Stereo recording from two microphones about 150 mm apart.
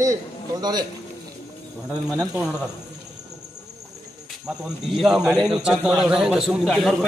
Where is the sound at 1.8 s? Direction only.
20° right (ahead or behind).